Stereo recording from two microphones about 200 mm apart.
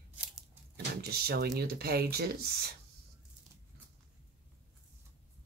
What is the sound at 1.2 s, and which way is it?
Speech, 50° right (ahead or behind).